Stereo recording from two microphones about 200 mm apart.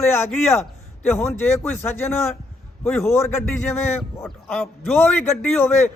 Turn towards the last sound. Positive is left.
turn(degrees=10)  # may be behind; listen again after turning